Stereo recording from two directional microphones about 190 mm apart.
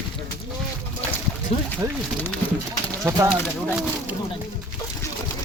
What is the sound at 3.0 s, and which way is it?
Speech, 15° right (ahead or behind).